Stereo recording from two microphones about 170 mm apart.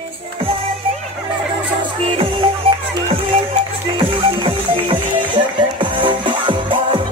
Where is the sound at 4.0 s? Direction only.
30° right (ahead or behind).